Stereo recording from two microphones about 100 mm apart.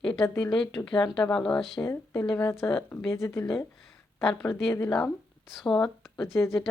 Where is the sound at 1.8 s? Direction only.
20° left (ahead or behind).